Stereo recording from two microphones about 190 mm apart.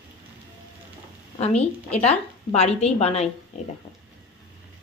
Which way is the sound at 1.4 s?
35° left (ahead or behind).